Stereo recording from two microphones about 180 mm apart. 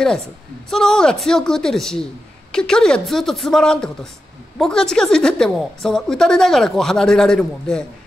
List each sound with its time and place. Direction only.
0.7 s a woman's voice: centre (ahead or behind)